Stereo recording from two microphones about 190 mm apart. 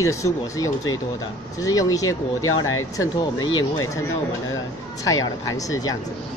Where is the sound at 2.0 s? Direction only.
90° left.